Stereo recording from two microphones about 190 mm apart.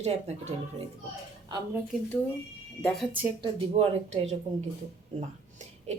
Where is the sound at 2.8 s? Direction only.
5° left (ahead or behind).